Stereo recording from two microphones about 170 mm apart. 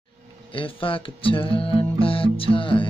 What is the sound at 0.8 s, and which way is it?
Music, 30° left (ahead or behind).